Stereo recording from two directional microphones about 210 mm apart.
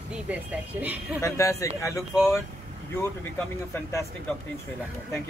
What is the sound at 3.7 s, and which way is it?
Speech, 15° left (ahead or behind).